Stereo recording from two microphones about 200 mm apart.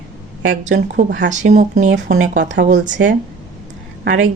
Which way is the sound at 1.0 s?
60° right (ahead or behind).